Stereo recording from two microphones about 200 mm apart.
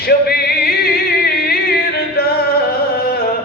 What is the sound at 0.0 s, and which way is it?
Music, 50° left (ahead or behind).